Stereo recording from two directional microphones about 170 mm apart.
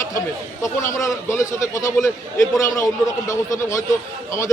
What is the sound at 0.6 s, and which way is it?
A man's voice, 15° left (ahead or behind).